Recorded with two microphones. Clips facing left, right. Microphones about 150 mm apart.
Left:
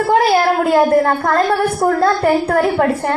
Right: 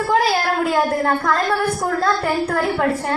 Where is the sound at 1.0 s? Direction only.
50° left (ahead or behind).